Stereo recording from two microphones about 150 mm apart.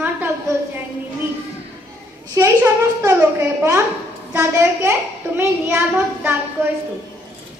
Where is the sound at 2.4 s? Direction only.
15° right (ahead or behind).